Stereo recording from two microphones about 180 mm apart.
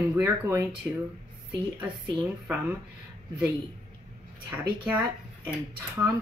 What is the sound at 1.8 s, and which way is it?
A woman's voice, 10° right (ahead or behind).